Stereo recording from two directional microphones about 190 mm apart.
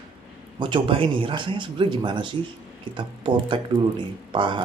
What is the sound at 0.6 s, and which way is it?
Speech, 25° right (ahead or behind).